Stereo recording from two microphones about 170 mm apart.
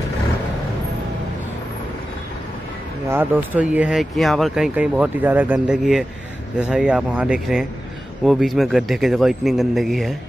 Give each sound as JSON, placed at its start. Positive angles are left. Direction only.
{"t": 3.1, "sound": "speech", "side_deg": -10}